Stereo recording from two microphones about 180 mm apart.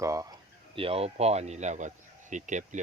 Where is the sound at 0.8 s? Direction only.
30° right (ahead or behind).